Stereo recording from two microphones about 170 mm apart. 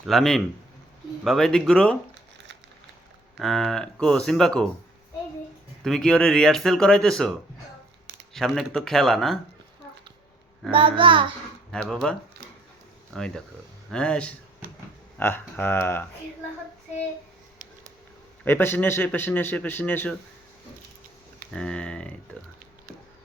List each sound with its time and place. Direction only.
0.0 s speech: centre (ahead or behind)
3.3 s speech: centre (ahead or behind)
5.8 s speech: 5° left (ahead or behind)
10.7 s child singing: 30° right (ahead or behind)
11.7 s speech: 5° left (ahead or behind)
13.1 s a man's voice: 5° left (ahead or behind)
18.4 s a man's voice: 10° left (ahead or behind)
21.5 s speech: 5° left (ahead or behind)